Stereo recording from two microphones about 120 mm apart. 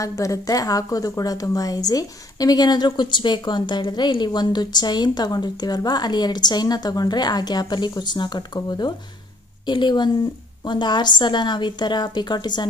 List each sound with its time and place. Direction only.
0.0 s a woman's voice: 30° left (ahead or behind)